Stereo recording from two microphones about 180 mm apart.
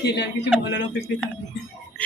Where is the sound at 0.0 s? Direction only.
70° left (ahead or behind).